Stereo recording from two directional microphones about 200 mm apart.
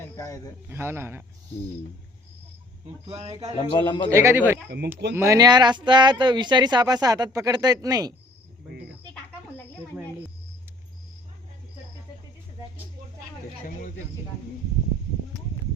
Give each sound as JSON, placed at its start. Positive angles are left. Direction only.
{"t": 0.2, "sound": "a man's voice", "side_deg": 15}
{"t": 0.7, "sound": "speech", "side_deg": -10}
{"t": 2.8, "sound": "speech", "side_deg": -30}
{"t": 3.6, "sound": "a man's voice", "side_deg": 25}
{"t": 4.1, "sound": "speech", "side_deg": -15}